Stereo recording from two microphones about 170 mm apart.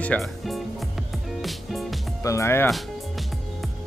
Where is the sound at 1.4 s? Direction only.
Centre (ahead or behind).